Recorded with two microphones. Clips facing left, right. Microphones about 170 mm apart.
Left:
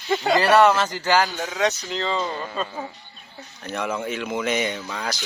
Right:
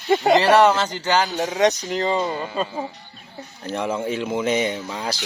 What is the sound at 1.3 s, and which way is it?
Speech, 35° right (ahead or behind).